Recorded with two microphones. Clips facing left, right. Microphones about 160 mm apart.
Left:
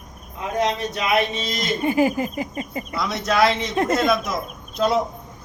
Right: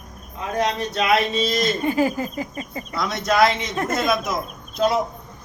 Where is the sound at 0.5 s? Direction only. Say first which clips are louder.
Even; 20° left (ahead or behind).